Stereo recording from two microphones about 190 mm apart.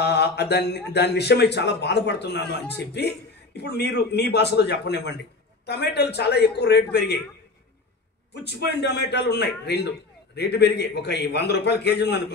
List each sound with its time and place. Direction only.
0.0 s speech: 60° left (ahead or behind)
8.3 s speech: 60° left (ahead or behind)